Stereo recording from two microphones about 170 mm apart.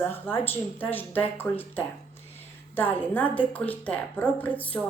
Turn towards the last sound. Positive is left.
turn(degrees=10)  # may be behind; listen again after turning